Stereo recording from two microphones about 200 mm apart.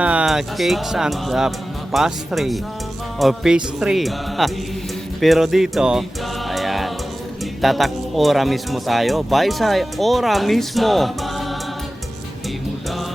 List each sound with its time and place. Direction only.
0.0 s speech: 5° right (ahead or behind)
6.5 s music: centre (ahead or behind)
7.6 s speech: centre (ahead or behind)